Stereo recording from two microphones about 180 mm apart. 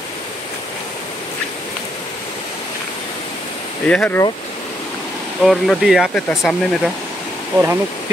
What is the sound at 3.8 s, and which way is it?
Speech, 10° left (ahead or behind).